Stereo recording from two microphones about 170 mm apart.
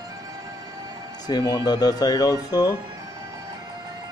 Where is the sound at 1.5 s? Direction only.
25° left (ahead or behind).